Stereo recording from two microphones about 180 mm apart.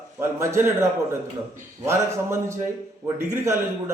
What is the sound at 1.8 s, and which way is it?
Speech, 15° right (ahead or behind).